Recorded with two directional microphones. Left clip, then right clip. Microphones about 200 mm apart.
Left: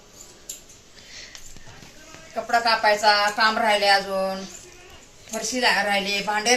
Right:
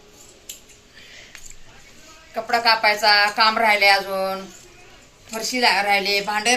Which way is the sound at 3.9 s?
15° right (ahead or behind).